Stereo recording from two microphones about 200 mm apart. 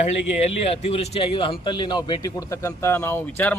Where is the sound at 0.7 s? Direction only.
30° left (ahead or behind).